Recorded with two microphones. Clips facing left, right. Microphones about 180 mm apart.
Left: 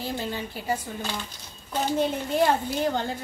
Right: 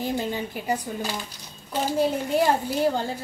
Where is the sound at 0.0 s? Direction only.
15° right (ahead or behind).